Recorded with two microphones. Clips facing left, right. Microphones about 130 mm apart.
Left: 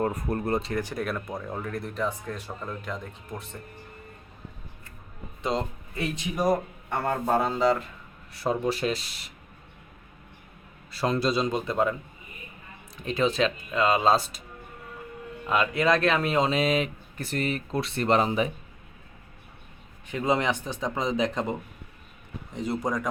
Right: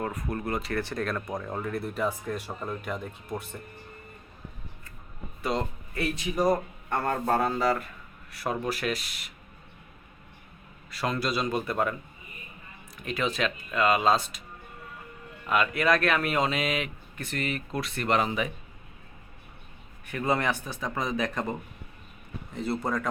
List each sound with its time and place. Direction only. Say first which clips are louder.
0.0 s speech: left 4 dB; 35° left (ahead or behind)
0.8 s speech: even; 10° left (ahead or behind); by 3.4 s 10° right (ahead or behind)
5.4 s a man's voice: left 1 dB; 20° left (ahead or behind)
10.9 s a man's voice: left 4 dB; 30° left (ahead or behind)
13.0 s a man's voice: left 4 dB; 30° left (ahead or behind)
15.4 s a man's voice: left 1 dB; 25° left (ahead or behind)
20.1 s a man's voice: left 2 dB; 20° left (ahead or behind)